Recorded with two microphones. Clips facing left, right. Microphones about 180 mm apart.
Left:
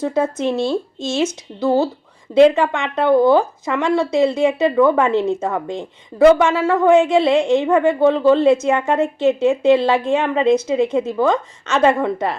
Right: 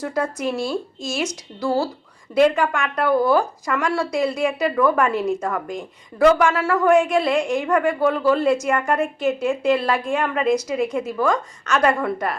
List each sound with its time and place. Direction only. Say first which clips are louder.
0.0 s a woman's voice: left 5 dB; 25° left (ahead or behind)